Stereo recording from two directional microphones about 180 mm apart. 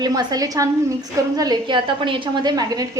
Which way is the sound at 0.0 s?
20° right (ahead or behind).